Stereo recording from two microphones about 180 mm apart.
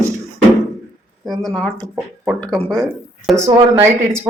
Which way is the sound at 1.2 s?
Centre (ahead or behind).